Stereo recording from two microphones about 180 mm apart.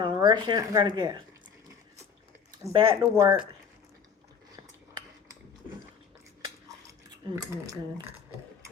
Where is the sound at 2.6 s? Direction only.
20° right (ahead or behind).